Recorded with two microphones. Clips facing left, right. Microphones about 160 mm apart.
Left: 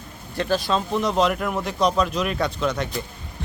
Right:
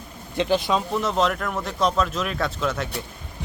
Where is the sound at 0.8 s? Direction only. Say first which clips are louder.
Left 2 dB; centre (ahead or behind).